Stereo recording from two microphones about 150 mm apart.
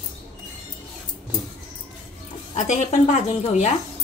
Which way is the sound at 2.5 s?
50° left (ahead or behind).